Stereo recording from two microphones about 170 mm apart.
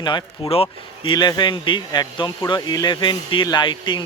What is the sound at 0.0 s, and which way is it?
Speech, 25° left (ahead or behind).